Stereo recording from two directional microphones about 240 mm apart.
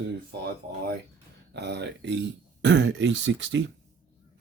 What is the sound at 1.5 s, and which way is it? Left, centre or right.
Speech, right.